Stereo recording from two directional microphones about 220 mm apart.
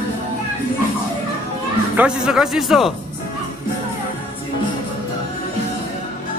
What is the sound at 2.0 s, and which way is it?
Speech, 5° right (ahead or behind).